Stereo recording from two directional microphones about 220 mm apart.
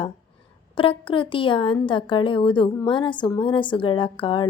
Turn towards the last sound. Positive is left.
turn(degrees=20)  # may be behind; listen again after turning